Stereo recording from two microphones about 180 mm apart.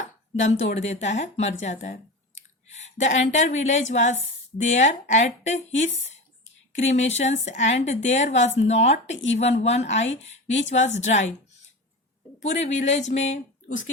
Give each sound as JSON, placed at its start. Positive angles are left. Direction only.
{"t": 0.6, "sound": "a woman's voice", "side_deg": 40}
{"t": 6.9, "sound": "a woman's voice", "side_deg": 40}
{"t": 10.2, "sound": "a sound", "side_deg": 40}
{"t": 10.6, "sound": "a woman's voice", "side_deg": 40}
{"t": 12.4, "sound": "a woman's voice", "side_deg": 40}